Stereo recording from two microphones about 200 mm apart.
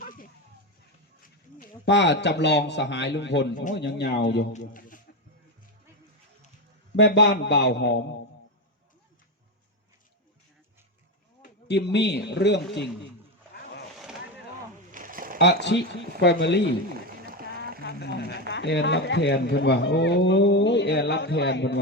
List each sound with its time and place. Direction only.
0.0 s a sound: 45° left (ahead or behind)
1.8 s a man's voice: 60° left (ahead or behind)
3.5 s speech: 40° left (ahead or behind)
3.8 s a man's voice: 55° left (ahead or behind)
4.5 s speech: 40° left (ahead or behind)
6.9 s a man's voice: 55° left (ahead or behind)
11.4 s a man's voice: 55° left (ahead or behind)
14.9 s a sound: 45° right (ahead or behind)
15.4 s a man's voice: 60° left (ahead or behind)
16.9 s a sound: 45° right (ahead or behind)
18.3 s speech: 60° left (ahead or behind)